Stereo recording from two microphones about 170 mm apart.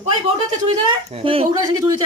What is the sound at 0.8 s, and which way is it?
Speech, 30° right (ahead or behind).